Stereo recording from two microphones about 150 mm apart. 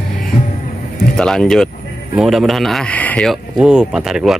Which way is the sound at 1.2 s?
5° left (ahead or behind).